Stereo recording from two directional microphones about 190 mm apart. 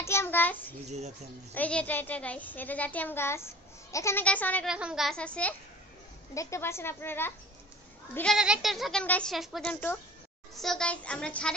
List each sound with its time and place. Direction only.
0.0 s a sound: 15° left (ahead or behind)
0.8 s speech: 35° right (ahead or behind)
1.5 s a child's voice: 5° left (ahead or behind)
4.6 s a child's voice: 5° right (ahead or behind)